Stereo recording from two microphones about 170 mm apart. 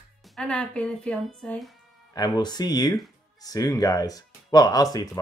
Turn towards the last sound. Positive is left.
turn(degrees=20)  # may be behind; listen again after turning